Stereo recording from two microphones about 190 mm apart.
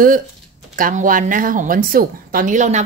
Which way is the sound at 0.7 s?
45° right (ahead or behind).